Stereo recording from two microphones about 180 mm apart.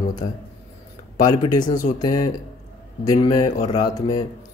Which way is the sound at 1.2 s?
20° left (ahead or behind).